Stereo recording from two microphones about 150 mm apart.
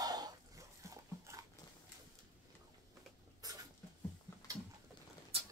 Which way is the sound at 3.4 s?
25° right (ahead or behind).